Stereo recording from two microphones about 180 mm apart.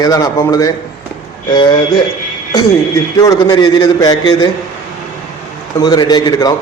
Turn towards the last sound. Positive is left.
turn(degrees=20)  # may be behind; listen again after turning